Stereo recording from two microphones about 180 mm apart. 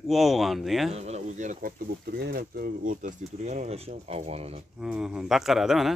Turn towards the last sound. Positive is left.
turn(degrees=0)  # may be behind; listen again after turning